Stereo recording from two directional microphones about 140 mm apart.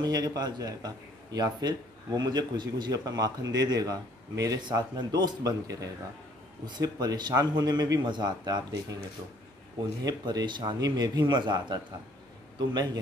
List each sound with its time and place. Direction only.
0.0 s a man's voice: 30° right (ahead or behind)
10.0 s a man's voice: 30° right (ahead or behind)